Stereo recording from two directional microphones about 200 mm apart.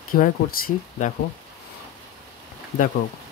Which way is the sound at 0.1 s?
45° left (ahead or behind).